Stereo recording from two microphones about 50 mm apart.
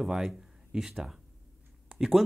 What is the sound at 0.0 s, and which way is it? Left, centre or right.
Speech, centre.